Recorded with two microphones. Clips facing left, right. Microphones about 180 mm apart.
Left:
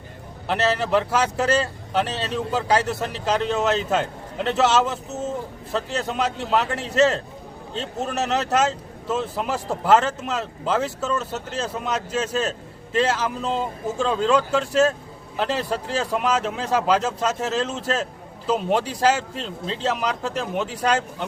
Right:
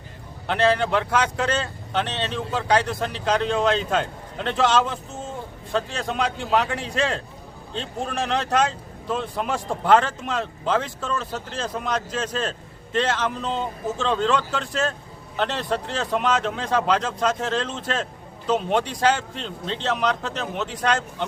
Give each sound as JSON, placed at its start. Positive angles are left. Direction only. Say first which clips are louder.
{"t": 0.4, "sound": "speech", "louder": "right 2 dB", "side_deg": 5}